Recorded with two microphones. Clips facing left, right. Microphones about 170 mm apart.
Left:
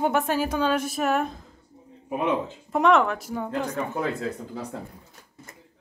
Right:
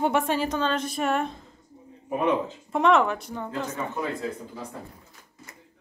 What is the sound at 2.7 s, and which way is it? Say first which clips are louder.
Speech: left 1 dB; centre (ahead or behind).